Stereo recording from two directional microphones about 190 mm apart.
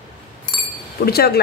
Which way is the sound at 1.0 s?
55° left (ahead or behind).